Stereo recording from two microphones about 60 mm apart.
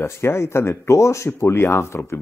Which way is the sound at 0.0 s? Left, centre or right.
Left.